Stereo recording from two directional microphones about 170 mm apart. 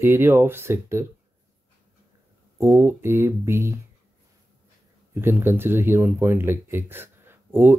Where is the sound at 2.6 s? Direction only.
15° right (ahead or behind).